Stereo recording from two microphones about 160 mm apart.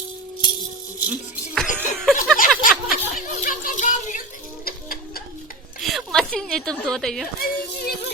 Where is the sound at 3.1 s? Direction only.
60° left (ahead or behind).